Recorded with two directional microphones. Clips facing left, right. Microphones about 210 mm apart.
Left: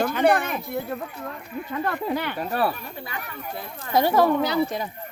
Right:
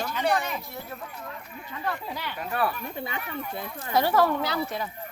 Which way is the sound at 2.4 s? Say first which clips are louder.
Even; 35° left (ahead or behind).